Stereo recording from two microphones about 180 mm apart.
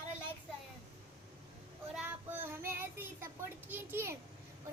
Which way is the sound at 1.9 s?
10° right (ahead or behind).